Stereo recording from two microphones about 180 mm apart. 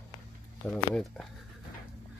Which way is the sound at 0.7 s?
Centre (ahead or behind).